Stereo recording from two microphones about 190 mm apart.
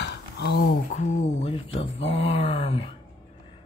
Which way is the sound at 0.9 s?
40° left (ahead or behind).